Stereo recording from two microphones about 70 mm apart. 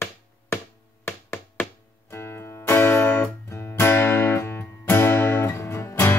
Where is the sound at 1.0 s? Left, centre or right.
Left.